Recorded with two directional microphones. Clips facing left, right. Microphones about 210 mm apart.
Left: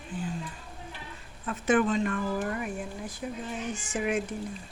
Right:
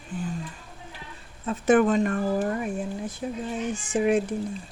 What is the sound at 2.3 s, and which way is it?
Speech, 35° right (ahead or behind).